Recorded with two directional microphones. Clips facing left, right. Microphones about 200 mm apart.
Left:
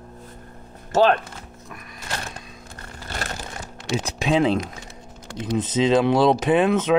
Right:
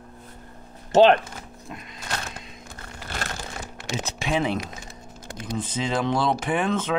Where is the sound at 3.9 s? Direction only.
15° left (ahead or behind).